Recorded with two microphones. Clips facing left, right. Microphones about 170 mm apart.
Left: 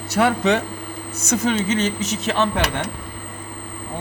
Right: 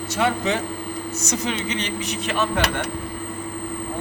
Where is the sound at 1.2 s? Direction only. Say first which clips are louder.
Left 7 dB; 50° left (ahead or behind).